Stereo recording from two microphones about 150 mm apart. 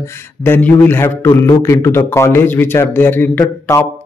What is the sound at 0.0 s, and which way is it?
Speech, 15° left (ahead or behind).